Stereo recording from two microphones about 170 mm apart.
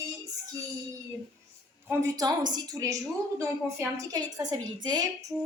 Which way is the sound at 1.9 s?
20° right (ahead or behind).